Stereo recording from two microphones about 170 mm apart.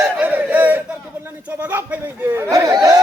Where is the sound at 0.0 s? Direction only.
10° right (ahead or behind).